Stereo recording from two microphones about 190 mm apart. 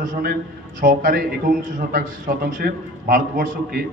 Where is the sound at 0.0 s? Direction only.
45° right (ahead or behind).